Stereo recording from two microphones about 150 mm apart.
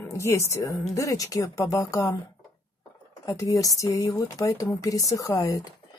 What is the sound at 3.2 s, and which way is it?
Speech, 20° left (ahead or behind).